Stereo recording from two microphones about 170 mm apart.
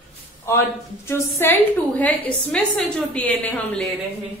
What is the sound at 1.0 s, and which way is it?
A woman's voice, 10° left (ahead or behind).